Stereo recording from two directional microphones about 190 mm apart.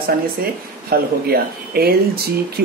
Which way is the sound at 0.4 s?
55° right (ahead or behind).